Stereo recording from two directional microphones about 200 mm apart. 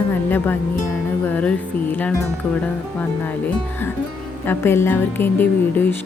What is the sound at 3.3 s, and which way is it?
A woman's voice, 10° left (ahead or behind).